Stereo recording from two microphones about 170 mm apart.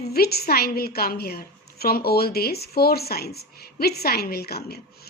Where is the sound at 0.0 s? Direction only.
65° left (ahead or behind).